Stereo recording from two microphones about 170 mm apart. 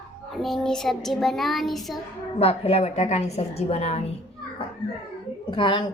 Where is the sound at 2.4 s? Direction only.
35° left (ahead or behind).